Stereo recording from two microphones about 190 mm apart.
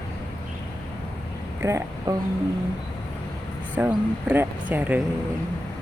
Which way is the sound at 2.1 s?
20° right (ahead or behind).